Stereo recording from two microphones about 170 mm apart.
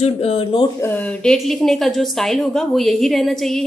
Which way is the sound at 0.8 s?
10° left (ahead or behind).